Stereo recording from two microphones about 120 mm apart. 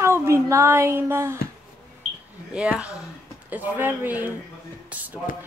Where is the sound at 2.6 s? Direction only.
10° right (ahead or behind).